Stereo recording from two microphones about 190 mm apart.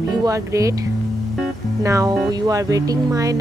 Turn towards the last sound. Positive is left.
turn(degrees=-20)  # may be behind; listen again after turning